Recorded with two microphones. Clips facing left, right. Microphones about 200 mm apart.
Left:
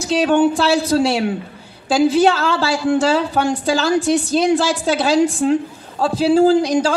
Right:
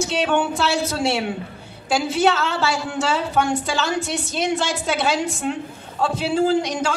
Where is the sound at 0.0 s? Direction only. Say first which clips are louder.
Left 6 dB; 35° left (ahead or behind).